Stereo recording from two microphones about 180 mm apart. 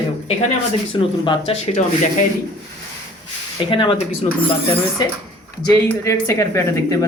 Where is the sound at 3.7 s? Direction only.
30° left (ahead or behind).